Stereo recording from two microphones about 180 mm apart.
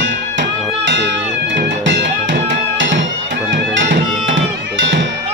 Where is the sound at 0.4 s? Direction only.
75° right (ahead or behind).